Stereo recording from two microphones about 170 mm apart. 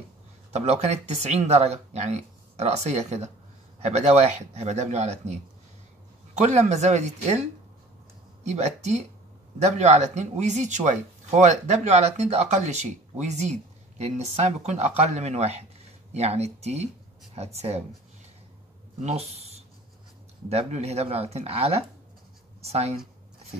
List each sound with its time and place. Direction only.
0.5 s speech: 40° right (ahead or behind)
8.5 s speech: 40° right (ahead or behind)
19.0 s speech: 40° right (ahead or behind)